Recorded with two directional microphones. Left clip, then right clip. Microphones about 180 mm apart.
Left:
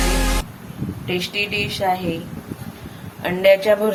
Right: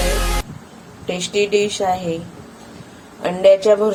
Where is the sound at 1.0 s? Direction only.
45° right (ahead or behind).